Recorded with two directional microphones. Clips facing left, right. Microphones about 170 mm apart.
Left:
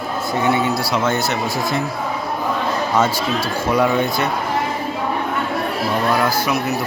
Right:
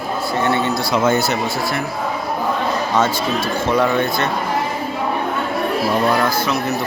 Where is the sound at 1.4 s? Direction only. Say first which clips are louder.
Left 1 dB; 15° left (ahead or behind).